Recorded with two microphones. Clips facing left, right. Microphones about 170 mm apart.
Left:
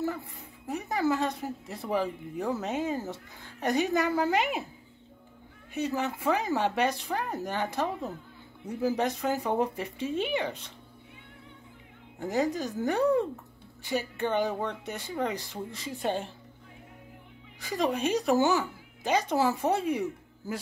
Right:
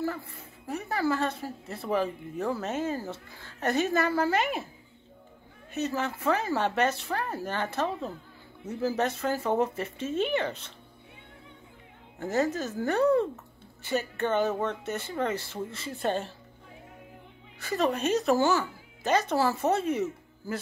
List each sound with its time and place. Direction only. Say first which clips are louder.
0.0 s speech: even; 15° left (ahead or behind)
5.7 s speech: even; 15° left (ahead or behind)
12.2 s speech: right 1 dB; 15° left (ahead or behind)
17.6 s speech: right 1 dB; 15° left (ahead or behind)